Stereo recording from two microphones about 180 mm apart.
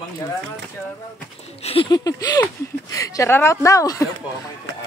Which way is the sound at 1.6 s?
30° left (ahead or behind).